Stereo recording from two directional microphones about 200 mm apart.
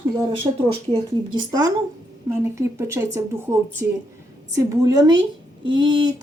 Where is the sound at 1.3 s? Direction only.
20° right (ahead or behind).